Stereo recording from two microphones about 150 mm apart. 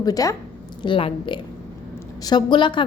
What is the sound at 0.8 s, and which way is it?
A woman's voice, 35° left (ahead or behind).